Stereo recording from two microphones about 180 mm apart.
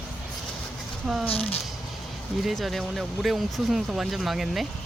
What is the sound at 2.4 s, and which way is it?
Speech, centre (ahead or behind).